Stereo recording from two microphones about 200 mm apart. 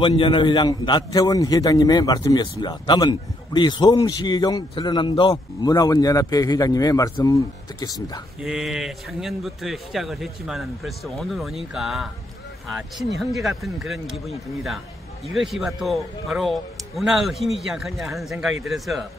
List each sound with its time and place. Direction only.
0.0 s a man's voice: 25° left (ahead or behind)
8.4 s a man's voice: 5° right (ahead or behind)
15.2 s a man's voice: centre (ahead or behind)